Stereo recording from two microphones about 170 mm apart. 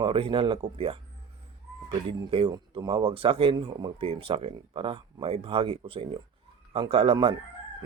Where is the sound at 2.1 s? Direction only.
30° right (ahead or behind).